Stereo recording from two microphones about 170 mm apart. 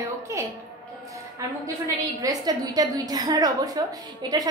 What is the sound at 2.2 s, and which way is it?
A woman's voice, 20° right (ahead or behind).